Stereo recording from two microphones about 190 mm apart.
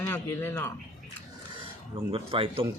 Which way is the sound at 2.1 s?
30° right (ahead or behind).